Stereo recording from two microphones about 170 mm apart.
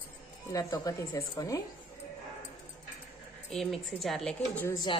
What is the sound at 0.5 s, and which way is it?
A woman's voice, 25° left (ahead or behind).